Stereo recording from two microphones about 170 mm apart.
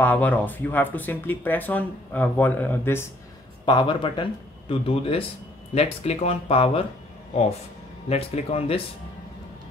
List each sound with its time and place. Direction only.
0.0 s speech: 10° left (ahead or behind)
3.6 s speech: 30° left (ahead or behind)
8.1 s speech: 35° left (ahead or behind)